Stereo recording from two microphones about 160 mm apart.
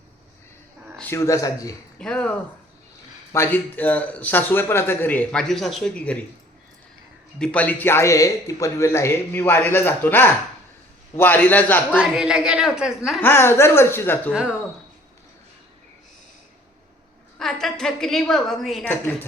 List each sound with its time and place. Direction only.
0.9 s speech: 15° left (ahead or behind)
2.0 s a woman's voice: 5° left (ahead or behind)
7.3 s speech: 5° left (ahead or behind)
11.9 s a woman's voice: 5° right (ahead or behind)
13.2 s speech: 15° left (ahead or behind)
17.3 s a woman's voice: 5° left (ahead or behind)